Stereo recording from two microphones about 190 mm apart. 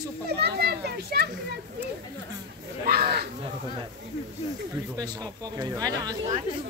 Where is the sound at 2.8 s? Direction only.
55° right (ahead or behind).